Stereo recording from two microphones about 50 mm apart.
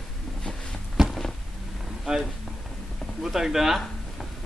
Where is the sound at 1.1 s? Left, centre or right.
Centre.